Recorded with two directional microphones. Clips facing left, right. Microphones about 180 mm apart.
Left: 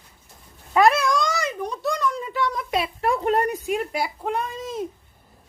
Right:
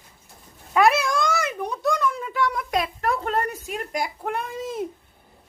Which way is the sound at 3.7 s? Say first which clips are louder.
Even; 5° left (ahead or behind).